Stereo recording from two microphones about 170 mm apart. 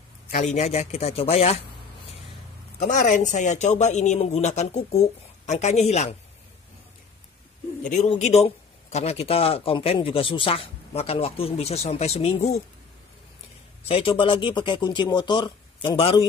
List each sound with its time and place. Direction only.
0.3 s a man's voice: 45° left (ahead or behind)
2.8 s a man's voice: 50° left (ahead or behind)
8.1 s a man's voice: 40° left (ahead or behind)
13.8 s speech: 35° left (ahead or behind)